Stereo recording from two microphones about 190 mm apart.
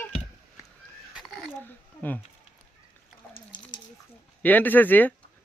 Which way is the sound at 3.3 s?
25° left (ahead or behind).